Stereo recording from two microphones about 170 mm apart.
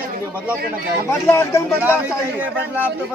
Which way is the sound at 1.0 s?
15° left (ahead or behind).